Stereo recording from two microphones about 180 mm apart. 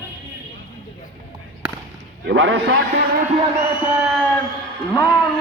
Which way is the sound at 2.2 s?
90° right.